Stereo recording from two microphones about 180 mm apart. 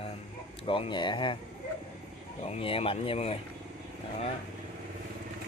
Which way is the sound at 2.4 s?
35° left (ahead or behind).